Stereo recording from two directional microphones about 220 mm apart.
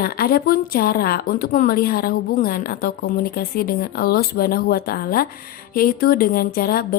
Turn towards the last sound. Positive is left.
turn(degrees=45)  # may be behind; listen again after turning